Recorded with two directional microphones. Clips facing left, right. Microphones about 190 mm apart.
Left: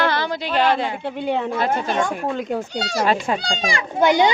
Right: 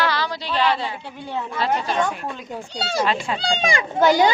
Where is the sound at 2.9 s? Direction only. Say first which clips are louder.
Left 3 dB; 45° left (ahead or behind).